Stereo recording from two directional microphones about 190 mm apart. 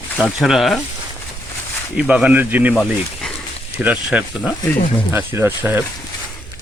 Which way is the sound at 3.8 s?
5° right (ahead or behind).